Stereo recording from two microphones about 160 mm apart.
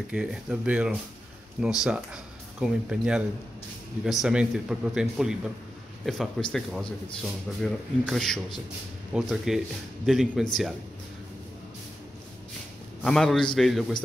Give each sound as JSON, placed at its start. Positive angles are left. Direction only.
{"t": 0.1, "sound": "a man's voice", "side_deg": -5}
{"t": 13.0, "sound": "a man's voice", "side_deg": 0}